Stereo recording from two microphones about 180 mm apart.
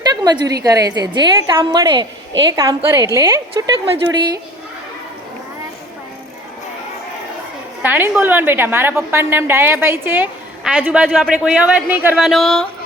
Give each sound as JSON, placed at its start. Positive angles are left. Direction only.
{"t": 0.0, "sound": "a woman's voice", "side_deg": -20}
{"t": 7.8, "sound": "a woman's voice", "side_deg": -10}